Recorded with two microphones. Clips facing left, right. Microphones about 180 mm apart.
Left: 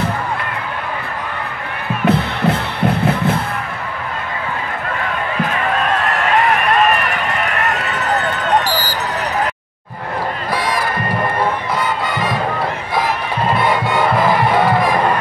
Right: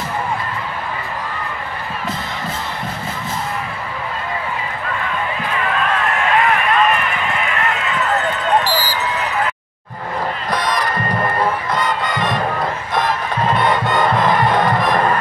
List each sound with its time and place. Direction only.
2.0 s music: 65° left (ahead or behind)
7.2 s run: 40° left (ahead or behind)
10.5 s crowd: 5° left (ahead or behind)
11.8 s music: 5° left (ahead or behind)